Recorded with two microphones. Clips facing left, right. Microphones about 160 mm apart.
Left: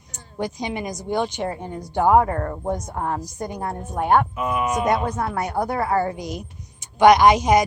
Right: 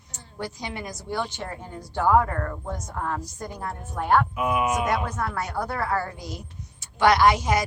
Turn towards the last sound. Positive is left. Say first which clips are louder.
# left 5 dB
turn(degrees=20)  # may be behind; listen again after turning